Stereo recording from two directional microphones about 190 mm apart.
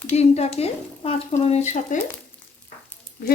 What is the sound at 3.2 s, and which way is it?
Speech, 50° left (ahead or behind).